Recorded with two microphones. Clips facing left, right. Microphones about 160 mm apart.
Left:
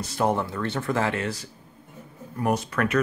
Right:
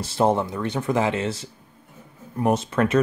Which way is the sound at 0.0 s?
25° right (ahead or behind).